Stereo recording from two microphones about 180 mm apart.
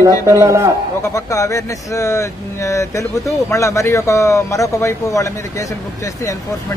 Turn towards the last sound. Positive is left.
turn(degrees=15)  # may be behind; listen again after turning